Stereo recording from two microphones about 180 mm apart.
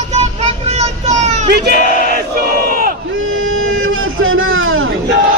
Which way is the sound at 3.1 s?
90° right.